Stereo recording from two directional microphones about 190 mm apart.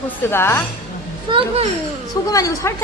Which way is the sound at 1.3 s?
25° right (ahead or behind).